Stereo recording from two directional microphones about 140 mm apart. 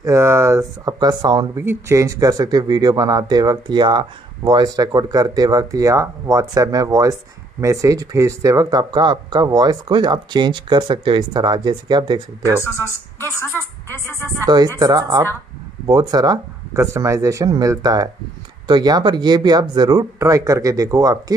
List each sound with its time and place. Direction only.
0.0 s speech: 20° right (ahead or behind)
1.6 s speech: 20° right (ahead or behind)
12.6 s speech: 20° left (ahead or behind)
14.2 s speech: 25° right (ahead or behind)